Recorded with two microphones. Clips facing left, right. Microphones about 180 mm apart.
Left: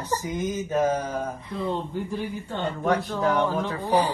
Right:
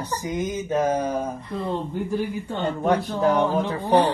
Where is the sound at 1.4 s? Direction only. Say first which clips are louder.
Right 1 dB; centre (ahead or behind).